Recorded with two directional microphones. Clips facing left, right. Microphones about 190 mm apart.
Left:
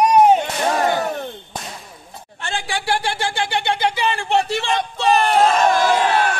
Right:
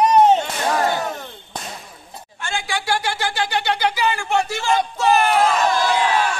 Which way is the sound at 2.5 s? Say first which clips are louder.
Left 1 dB; 35° left (ahead or behind).